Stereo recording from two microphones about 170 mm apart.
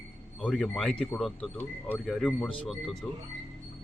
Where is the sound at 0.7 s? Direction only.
5° left (ahead or behind).